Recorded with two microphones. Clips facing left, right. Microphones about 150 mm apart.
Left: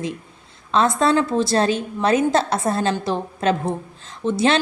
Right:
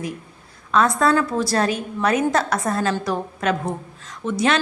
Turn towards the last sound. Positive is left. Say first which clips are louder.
# left 2 dB
turn(degrees=30)  # may be behind; listen again after turning